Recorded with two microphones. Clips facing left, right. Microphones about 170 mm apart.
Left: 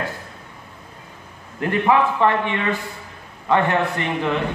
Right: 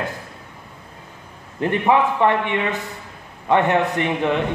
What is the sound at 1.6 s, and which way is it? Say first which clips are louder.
A man's voice: even; 20° right (ahead or behind).